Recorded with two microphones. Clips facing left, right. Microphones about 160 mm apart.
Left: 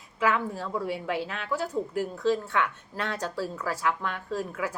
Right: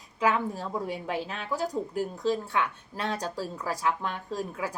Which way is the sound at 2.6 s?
30° right (ahead or behind).